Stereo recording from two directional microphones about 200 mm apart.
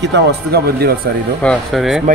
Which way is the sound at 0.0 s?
60° right (ahead or behind).